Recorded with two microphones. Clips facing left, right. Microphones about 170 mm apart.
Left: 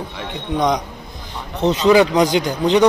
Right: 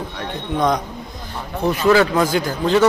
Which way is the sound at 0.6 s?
15° left (ahead or behind).